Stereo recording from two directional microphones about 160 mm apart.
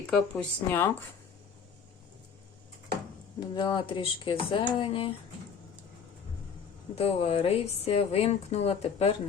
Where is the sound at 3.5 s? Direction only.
30° left (ahead or behind).